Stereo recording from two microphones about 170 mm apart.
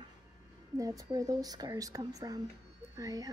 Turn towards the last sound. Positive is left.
turn(degrees=-20)  # may be behind; listen again after turning